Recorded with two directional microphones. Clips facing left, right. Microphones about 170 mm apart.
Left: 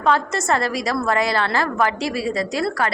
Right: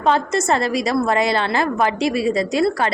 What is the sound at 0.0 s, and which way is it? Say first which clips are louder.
A woman's voice: right 2 dB; 20° right (ahead or behind).